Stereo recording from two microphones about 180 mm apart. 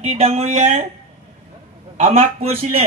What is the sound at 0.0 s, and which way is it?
Speech, 35° right (ahead or behind).